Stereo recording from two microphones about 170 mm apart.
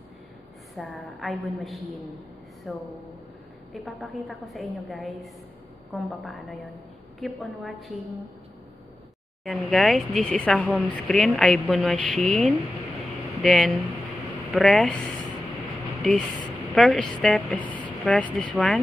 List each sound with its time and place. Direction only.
0.7 s speech: centre (ahead or behind)
9.4 s speech: centre (ahead or behind)
13.0 s a sound: centre (ahead or behind)
14.5 s speech: centre (ahead or behind)
16.7 s speech: 5° left (ahead or behind)